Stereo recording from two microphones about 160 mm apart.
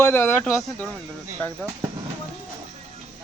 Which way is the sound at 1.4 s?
10° left (ahead or behind).